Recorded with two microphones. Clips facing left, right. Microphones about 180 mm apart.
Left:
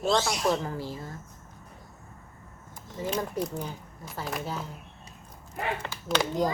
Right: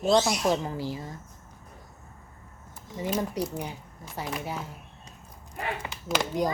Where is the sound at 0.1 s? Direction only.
20° right (ahead or behind).